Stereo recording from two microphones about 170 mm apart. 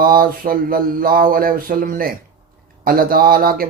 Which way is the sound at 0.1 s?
55° right (ahead or behind).